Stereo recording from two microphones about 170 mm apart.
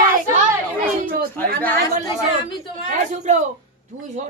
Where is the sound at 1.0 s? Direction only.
65° right (ahead or behind).